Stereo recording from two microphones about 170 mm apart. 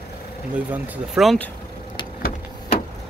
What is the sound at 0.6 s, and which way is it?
Speech, 5° right (ahead or behind).